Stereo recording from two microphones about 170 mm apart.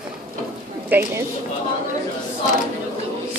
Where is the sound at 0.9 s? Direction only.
10° right (ahead or behind).